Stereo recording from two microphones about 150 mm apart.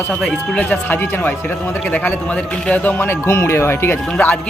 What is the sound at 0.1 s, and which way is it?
A man's voice, 5° left (ahead or behind).